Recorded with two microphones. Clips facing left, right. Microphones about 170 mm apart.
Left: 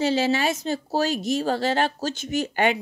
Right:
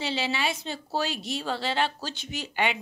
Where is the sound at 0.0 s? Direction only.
45° left (ahead or behind).